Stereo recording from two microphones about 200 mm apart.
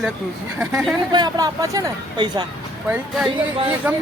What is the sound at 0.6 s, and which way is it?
Speech, 5° right (ahead or behind).